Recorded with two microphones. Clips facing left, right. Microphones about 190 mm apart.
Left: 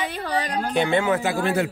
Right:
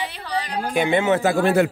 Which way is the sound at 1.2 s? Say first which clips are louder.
Right 5 dB; 55° right (ahead or behind).